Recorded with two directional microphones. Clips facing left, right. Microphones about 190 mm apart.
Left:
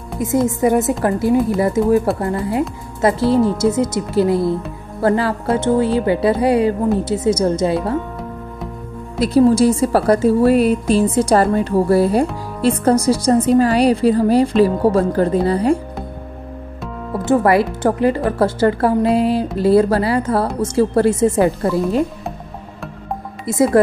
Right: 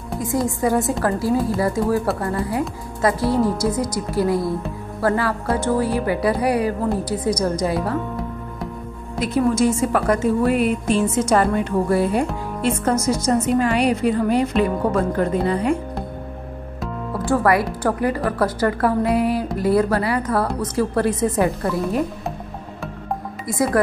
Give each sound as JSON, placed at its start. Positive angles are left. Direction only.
{"t": 0.5, "sound": "speech", "side_deg": 20}
{"t": 9.2, "sound": "a woman's voice", "side_deg": 35}
{"t": 17.2, "sound": "speech", "side_deg": 20}
{"t": 23.4, "sound": "speech", "side_deg": 25}